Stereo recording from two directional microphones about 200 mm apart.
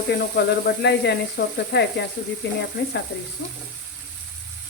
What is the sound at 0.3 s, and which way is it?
Speech, 60° left (ahead or behind).